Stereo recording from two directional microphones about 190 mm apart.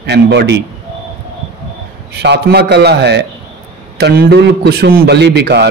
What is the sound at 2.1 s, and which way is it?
A man's voice, 60° right (ahead or behind).